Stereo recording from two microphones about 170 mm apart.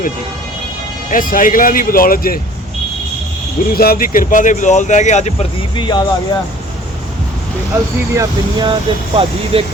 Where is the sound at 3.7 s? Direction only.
60° left (ahead or behind); by 6.0 s 30° left (ahead or behind).